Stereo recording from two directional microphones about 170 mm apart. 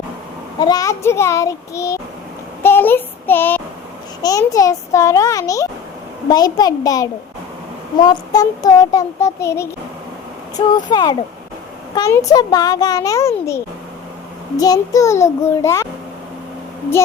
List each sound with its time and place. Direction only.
0.6 s a child's voice: 20° left (ahead or behind)
2.6 s child singing: 10° left (ahead or behind)
4.2 s a child's voice: 20° left (ahead or behind)
10.8 s a child's voice: 25° left (ahead or behind)